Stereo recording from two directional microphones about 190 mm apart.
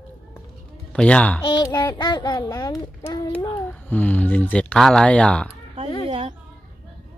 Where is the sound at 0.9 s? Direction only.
5° left (ahead or behind).